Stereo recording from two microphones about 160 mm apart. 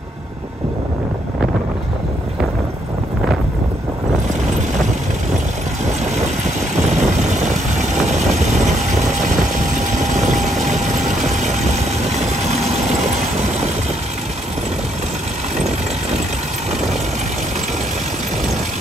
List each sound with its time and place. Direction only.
5.9 s vehicle: 45° right (ahead or behind)